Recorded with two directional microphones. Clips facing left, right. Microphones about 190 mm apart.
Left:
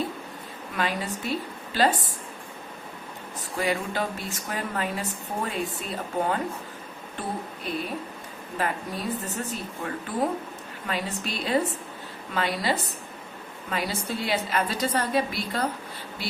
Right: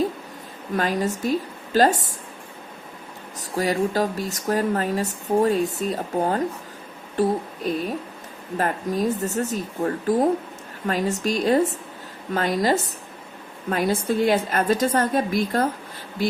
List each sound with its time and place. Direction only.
0.8 s a woman's voice: 45° right (ahead or behind)
3.6 s a woman's voice: 40° right (ahead or behind)